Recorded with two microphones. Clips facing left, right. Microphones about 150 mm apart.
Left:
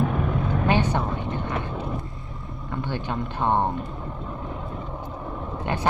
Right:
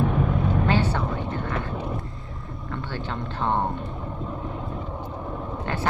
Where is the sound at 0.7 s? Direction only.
20° left (ahead or behind).